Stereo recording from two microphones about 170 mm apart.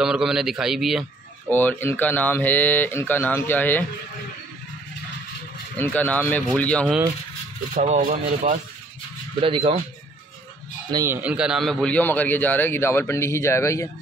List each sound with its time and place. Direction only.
0.0 s a man's voice: 5° right (ahead or behind)
1.5 s a man's voice: 10° left (ahead or behind)
5.8 s a man's voice: 10° left (ahead or behind)
7.7 s speech: 45° right (ahead or behind)
9.4 s speech: 30° right (ahead or behind)
10.9 s a man's voice: 15° right (ahead or behind); by 13.8 s 15° left (ahead or behind)